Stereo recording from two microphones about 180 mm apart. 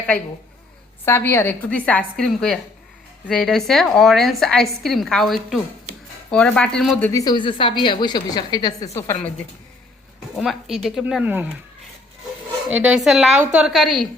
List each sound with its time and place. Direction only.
1.0 s a woman's voice: 15° left (ahead or behind)
7.1 s a woman's voice: 20° left (ahead or behind)
10.3 s a woman's voice: centre (ahead or behind)
12.8 s a woman's voice: 5° right (ahead or behind)